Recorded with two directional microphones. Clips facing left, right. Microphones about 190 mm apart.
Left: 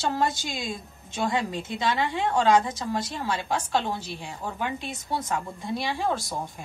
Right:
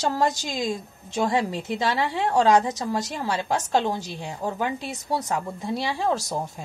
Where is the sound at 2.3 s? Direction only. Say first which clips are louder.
Right 3 dB; 40° right (ahead or behind).